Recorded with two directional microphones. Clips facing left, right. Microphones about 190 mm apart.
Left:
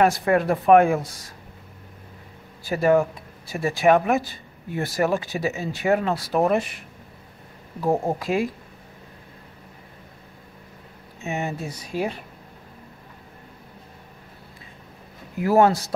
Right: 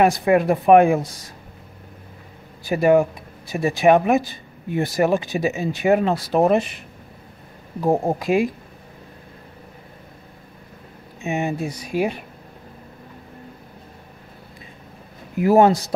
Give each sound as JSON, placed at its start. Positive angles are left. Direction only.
{"t": 0.0, "sound": "speech", "side_deg": -15}
{"t": 2.6, "sound": "speech", "side_deg": -15}
{"t": 7.8, "sound": "speech", "side_deg": -15}
{"t": 11.2, "sound": "speech", "side_deg": -15}
{"t": 15.3, "sound": "speech", "side_deg": -20}